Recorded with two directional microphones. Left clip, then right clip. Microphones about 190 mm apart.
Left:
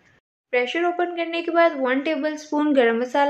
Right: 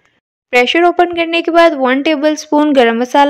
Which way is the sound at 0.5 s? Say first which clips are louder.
Right 12 dB; 55° right (ahead or behind).